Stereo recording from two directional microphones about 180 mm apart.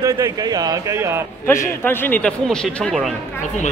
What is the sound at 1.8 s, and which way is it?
Speech, 10° left (ahead or behind).